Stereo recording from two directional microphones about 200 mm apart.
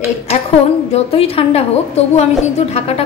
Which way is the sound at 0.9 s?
30° left (ahead or behind).